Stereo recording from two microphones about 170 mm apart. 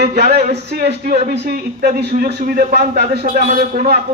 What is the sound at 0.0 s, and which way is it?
A man's voice, 70° right (ahead or behind).